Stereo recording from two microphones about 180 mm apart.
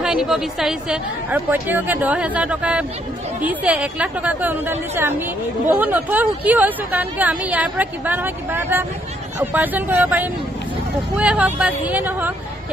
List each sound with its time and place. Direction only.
0.0 s speech: 5° right (ahead or behind)